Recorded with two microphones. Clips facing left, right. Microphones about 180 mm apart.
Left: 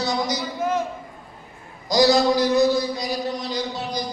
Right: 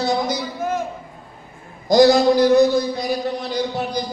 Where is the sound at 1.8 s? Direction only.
55° right (ahead or behind).